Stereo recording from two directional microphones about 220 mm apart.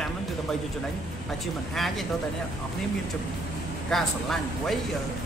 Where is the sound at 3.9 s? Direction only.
Centre (ahead or behind).